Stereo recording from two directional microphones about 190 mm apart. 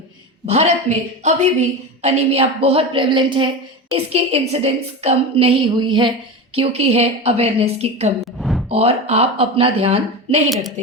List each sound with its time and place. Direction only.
0.4 s a woman's voice: 35° right (ahead or behind)
8.2 s a sound: centre (ahead or behind)
8.7 s a woman's voice: 30° right (ahead or behind)